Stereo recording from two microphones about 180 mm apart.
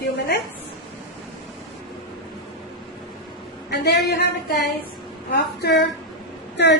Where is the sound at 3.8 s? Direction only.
65° left (ahead or behind).